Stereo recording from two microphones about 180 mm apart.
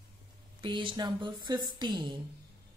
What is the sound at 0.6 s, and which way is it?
Speech, 25° right (ahead or behind).